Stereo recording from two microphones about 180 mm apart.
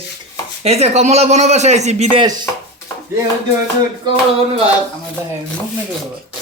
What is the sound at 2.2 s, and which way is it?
Speech, 25° right (ahead or behind).